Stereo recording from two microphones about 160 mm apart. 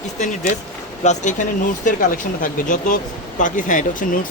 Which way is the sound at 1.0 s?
50° left (ahead or behind).